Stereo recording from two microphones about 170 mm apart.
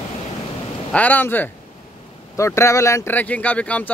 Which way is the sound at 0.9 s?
10° left (ahead or behind).